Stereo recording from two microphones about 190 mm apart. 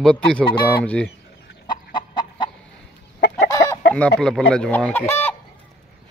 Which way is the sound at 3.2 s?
60° left (ahead or behind).